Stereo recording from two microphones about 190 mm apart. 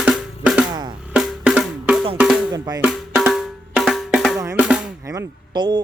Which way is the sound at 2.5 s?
20° right (ahead or behind).